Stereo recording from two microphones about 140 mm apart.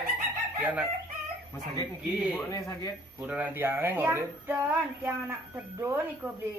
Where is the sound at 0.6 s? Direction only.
10° right (ahead or behind).